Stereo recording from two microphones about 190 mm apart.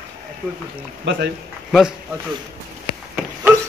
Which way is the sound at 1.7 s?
Centre (ahead or behind).